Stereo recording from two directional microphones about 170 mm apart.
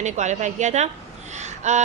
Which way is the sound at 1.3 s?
45° right (ahead or behind).